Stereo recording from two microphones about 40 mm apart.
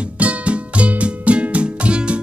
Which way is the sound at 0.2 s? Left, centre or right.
Right.